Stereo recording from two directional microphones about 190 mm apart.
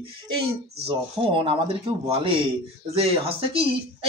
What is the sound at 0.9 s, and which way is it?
A child's voice, 30° right (ahead or behind).